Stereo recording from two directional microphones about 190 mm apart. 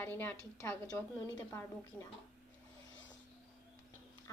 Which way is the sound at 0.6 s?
20° left (ahead or behind).